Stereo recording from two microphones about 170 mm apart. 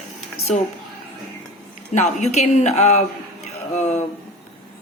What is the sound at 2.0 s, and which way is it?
A woman's voice, 45° left (ahead or behind).